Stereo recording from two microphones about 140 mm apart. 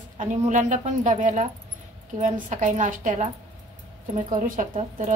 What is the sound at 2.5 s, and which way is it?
A woman's voice, 65° right (ahead or behind).